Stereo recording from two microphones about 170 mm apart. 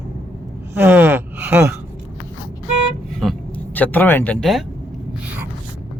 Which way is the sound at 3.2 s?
Centre (ahead or behind).